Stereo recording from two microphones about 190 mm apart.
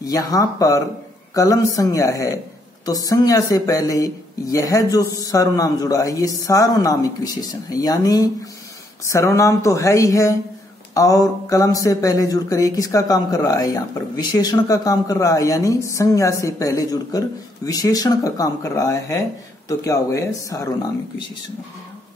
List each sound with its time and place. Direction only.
0.0 s speech: 20° left (ahead or behind)